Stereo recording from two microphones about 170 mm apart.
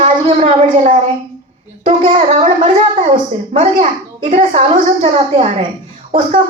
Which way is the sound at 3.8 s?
50° right (ahead or behind).